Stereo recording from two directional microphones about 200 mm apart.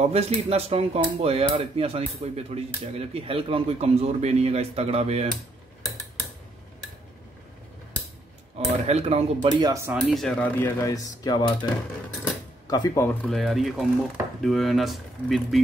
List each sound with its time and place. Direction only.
0.0 s speech: 30° right (ahead or behind)
8.5 s speech: 30° right (ahead or behind); by 9.9 s 15° right (ahead or behind)
9.9 s speech: centre (ahead or behind); by 11.5 s 20° left (ahead or behind)
12.6 s speech: 20° left (ahead or behind); by 15.6 s centre (ahead or behind)